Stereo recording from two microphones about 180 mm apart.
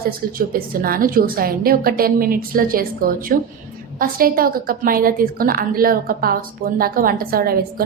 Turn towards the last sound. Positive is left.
turn(degrees=-55)  # may be behind; listen again after turning